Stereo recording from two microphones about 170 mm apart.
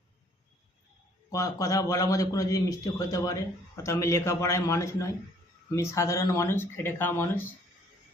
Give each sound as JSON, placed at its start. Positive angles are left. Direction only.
{"t": 1.3, "sound": "a man's voice", "side_deg": 20}